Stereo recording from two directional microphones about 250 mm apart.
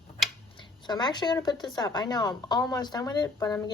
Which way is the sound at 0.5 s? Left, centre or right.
Centre.